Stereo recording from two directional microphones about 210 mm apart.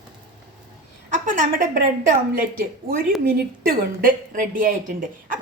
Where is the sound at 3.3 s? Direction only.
45° right (ahead or behind).